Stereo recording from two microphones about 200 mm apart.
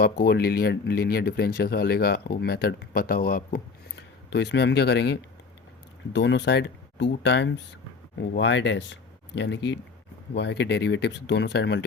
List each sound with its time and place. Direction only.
0.0 s speech: 55° left (ahead or behind)
4.3 s speech: 60° left (ahead or behind)